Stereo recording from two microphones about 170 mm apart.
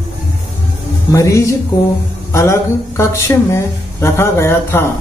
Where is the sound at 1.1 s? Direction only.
20° left (ahead or behind).